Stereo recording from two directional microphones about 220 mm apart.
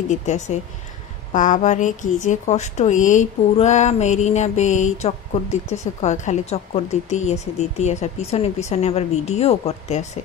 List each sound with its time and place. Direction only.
0.1 s speech: 35° left (ahead or behind)